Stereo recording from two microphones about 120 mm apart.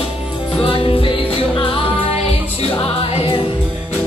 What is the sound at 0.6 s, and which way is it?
Music, 45° left (ahead or behind).